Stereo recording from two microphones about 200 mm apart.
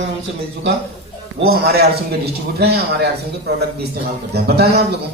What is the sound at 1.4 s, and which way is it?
A man's voice, 50° right (ahead or behind).